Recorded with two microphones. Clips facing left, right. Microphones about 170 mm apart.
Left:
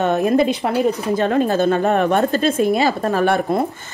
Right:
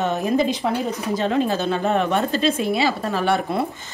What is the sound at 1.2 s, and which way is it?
A woman's voice, 50° left (ahead or behind).